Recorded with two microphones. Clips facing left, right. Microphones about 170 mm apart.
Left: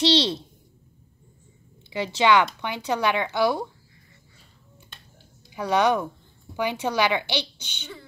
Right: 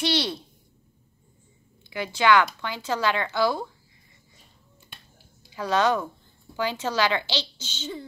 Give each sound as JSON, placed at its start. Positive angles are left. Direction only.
{"t": 0.0, "sound": "speech", "side_deg": 25}
{"t": 1.9, "sound": "speech", "side_deg": 20}
{"t": 5.5, "sound": "speech", "side_deg": 15}